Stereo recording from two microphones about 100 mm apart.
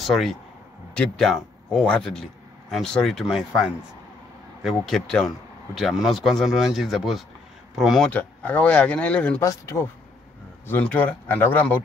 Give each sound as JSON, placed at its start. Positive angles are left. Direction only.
{"t": 0.0, "sound": "speech", "side_deg": 0}
{"t": 8.1, "sound": "speech", "side_deg": 15}
{"t": 9.4, "sound": "speech", "side_deg": 30}
{"t": 10.7, "sound": "speech", "side_deg": 15}